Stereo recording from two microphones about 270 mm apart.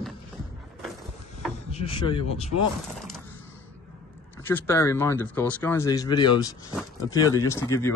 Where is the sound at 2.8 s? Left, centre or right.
Centre.